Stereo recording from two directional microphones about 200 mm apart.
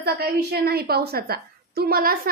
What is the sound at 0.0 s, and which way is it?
A woman's voice, 50° right (ahead or behind).